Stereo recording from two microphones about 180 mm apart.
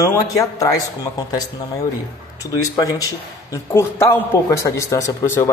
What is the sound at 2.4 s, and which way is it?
A man's voice, 20° left (ahead or behind).